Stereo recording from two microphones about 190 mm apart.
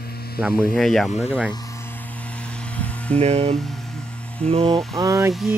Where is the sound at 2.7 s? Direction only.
5° left (ahead or behind).